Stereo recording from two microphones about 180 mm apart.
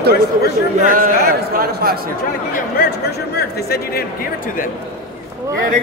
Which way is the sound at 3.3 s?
60° left (ahead or behind).